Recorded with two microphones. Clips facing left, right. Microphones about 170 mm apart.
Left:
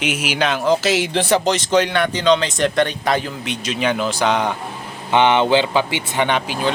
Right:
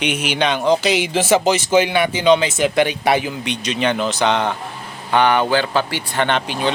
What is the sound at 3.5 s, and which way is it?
Speech, 5° left (ahead or behind).